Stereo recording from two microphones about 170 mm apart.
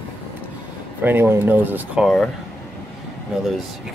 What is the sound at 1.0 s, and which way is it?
Speech, 10° right (ahead or behind).